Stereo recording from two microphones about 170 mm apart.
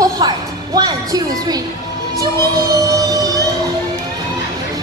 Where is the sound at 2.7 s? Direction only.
20° right (ahead or behind).